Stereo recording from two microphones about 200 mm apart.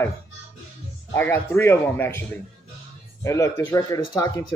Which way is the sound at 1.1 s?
10° left (ahead or behind).